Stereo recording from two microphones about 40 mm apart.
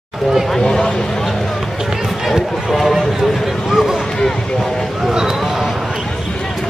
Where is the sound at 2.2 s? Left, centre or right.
Centre.